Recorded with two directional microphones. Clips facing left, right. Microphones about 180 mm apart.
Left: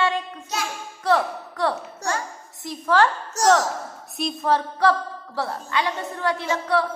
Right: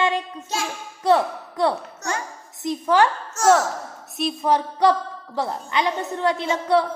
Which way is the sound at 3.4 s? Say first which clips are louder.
Right 1 dB; 35° left (ahead or behind).